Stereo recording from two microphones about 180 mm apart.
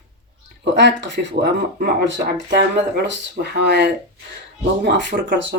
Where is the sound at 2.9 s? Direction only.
65° right (ahead or behind); by 5.6 s 85° right.